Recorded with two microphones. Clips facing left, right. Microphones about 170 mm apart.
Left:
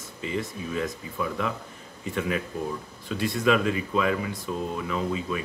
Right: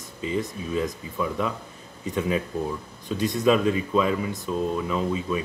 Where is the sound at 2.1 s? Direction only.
20° right (ahead or behind).